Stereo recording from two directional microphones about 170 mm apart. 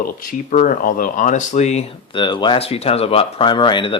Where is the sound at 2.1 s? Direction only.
25° left (ahead or behind).